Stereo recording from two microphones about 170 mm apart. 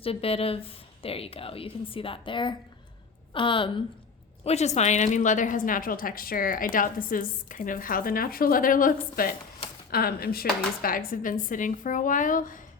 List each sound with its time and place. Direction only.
0.0 s a woman's voice: 35° left (ahead or behind)
4.4 s a woman's voice: 40° left (ahead or behind)